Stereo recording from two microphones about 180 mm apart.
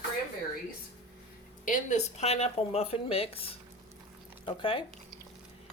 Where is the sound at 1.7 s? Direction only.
40° left (ahead or behind).